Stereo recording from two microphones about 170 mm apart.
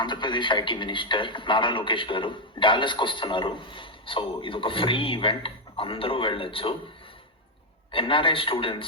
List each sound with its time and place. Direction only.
0.0 s a man's voice: 25° left (ahead or behind)
7.9 s a man's voice: 30° left (ahead or behind)